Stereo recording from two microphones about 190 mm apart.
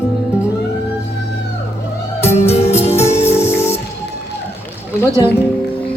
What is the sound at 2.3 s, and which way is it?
Music, 35° left (ahead or behind).